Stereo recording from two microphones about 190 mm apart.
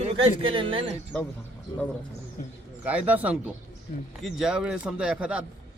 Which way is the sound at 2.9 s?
10° right (ahead or behind).